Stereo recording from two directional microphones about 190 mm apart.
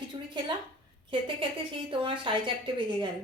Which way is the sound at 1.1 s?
25° right (ahead or behind).